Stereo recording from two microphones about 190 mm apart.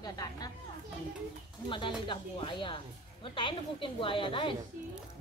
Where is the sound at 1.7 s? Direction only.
25° left (ahead or behind).